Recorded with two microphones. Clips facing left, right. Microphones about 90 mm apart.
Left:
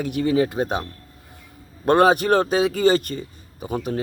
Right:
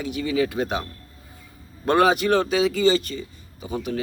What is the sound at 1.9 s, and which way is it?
A man's voice, 40° left (ahead or behind).